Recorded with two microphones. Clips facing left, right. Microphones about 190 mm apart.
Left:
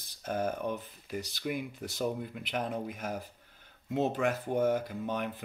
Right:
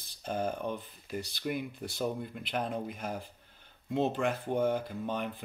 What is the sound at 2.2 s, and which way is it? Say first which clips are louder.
Speech: even; 5° left (ahead or behind).